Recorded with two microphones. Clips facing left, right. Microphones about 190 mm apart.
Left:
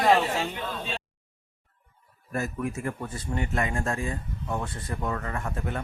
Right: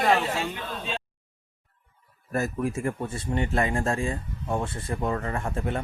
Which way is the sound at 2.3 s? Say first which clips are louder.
Right 3 dB; 35° right (ahead or behind).